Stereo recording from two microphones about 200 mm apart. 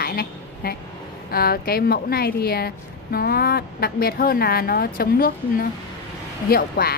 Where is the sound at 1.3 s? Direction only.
50° left (ahead or behind).